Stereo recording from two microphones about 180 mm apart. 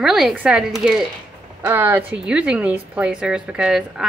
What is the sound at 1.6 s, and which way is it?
A woman's voice, 10° right (ahead or behind).